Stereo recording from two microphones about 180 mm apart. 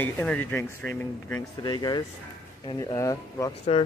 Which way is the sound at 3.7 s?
35° left (ahead or behind).